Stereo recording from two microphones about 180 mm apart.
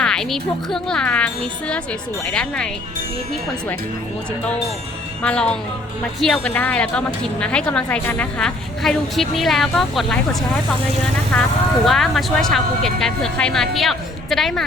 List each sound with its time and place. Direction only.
0.0 s speech: 5° left (ahead or behind)
5.2 s speech: 5° left (ahead or behind)
11.3 s speech: 5° left (ahead or behind)